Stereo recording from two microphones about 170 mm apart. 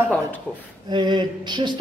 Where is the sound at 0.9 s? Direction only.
25° right (ahead or behind).